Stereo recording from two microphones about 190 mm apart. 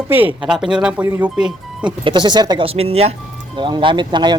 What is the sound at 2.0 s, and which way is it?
Speech, 25° right (ahead or behind).